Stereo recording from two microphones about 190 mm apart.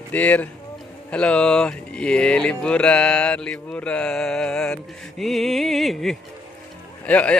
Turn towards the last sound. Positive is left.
turn(degrees=5)  # may be behind; listen again after turning